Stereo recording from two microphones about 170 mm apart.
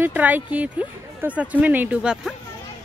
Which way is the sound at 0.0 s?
10° right (ahead or behind).